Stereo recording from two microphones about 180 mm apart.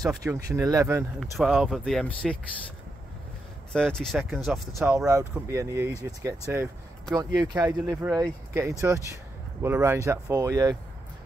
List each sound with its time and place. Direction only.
0.0 s speech: 20° right (ahead or behind)
1.2 s speech: centre (ahead or behind)
3.7 s speech: 5° left (ahead or behind)
4.8 s speech: 15° right (ahead or behind)